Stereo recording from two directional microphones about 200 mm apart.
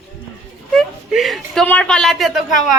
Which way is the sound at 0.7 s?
Centre (ahead or behind).